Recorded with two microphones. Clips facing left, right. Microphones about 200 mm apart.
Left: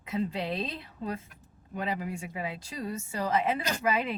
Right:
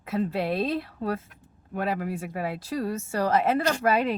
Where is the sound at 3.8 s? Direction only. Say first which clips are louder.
Right 4 dB; 60° right (ahead or behind).